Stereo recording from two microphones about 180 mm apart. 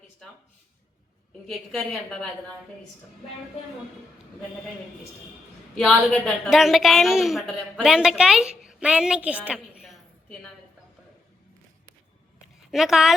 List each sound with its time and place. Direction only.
1.5 s a woman's voice: centre (ahead or behind)
5.7 s a woman's voice: 5° left (ahead or behind)
12.7 s a woman's voice: centre (ahead or behind)